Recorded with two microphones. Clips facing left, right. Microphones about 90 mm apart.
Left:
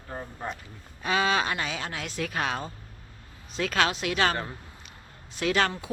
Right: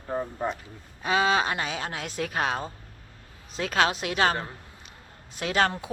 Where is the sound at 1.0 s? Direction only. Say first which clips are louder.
Right 2 dB; 25° right (ahead or behind).